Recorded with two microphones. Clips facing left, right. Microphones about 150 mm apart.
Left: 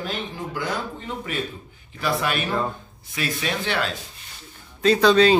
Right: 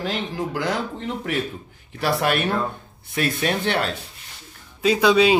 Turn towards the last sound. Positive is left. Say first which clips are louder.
# left 1 dB
turn(degrees=-10)  # may be behind; listen again after turning